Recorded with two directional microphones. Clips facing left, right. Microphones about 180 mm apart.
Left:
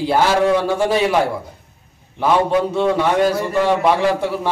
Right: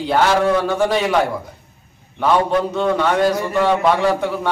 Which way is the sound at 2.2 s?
10° left (ahead or behind).